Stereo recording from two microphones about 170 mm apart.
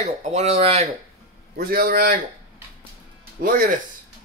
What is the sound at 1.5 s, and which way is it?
Speech, 65° right (ahead or behind).